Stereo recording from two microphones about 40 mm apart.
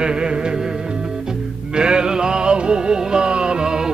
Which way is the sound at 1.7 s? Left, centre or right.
Right.